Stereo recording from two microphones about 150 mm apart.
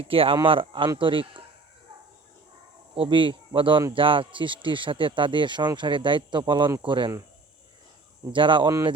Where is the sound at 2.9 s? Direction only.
35° right (ahead or behind).